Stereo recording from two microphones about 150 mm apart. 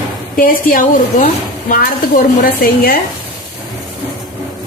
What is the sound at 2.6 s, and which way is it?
Speech, 90° left.